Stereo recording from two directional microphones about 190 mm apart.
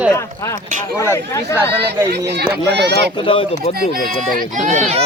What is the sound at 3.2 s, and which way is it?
Speech, 25° left (ahead or behind).